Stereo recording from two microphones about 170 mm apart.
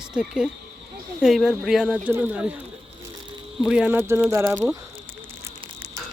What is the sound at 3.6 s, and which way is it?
Speech, 5° right (ahead or behind).